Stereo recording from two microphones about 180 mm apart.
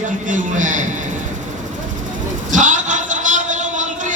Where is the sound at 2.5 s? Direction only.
45° right (ahead or behind).